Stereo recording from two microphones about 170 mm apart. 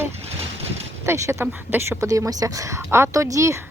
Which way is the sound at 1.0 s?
15° right (ahead or behind).